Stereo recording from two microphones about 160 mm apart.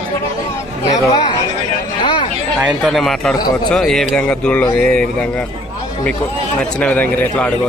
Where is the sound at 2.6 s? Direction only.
Centre (ahead or behind).